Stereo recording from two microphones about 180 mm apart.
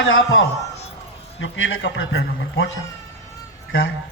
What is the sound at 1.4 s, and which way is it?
A man's voice, 90° left.